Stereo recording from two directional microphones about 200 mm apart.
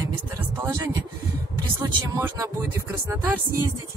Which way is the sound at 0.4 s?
15° right (ahead or behind).